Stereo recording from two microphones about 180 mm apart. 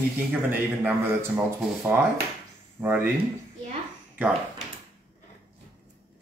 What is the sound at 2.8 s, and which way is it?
Speech, 10° right (ahead or behind).